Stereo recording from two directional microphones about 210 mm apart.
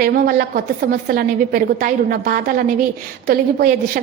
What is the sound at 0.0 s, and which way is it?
A woman's voice, 45° right (ahead or behind).